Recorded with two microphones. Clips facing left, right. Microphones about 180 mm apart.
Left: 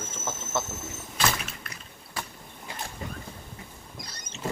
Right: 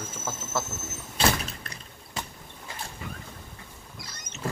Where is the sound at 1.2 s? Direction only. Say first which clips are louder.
Right 3 dB; 30° right (ahead or behind).